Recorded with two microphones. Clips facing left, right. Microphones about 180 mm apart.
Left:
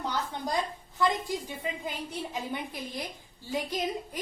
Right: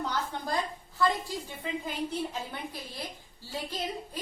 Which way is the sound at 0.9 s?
15° left (ahead or behind).